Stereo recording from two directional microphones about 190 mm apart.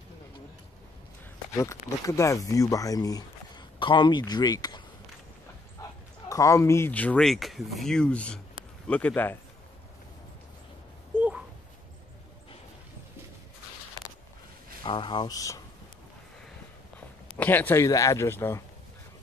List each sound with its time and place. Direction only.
1.6 s speech: 15° left (ahead or behind)
11.1 s a sound: 5° right (ahead or behind)
14.8 s speech: 25° left (ahead or behind)
17.4 s speech: 10° left (ahead or behind)